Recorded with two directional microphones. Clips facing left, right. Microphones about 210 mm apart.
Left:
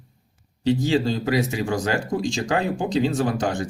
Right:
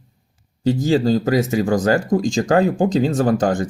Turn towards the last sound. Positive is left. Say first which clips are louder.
# right 6 dB
turn(degrees=-50)  # may be behind; listen again after turning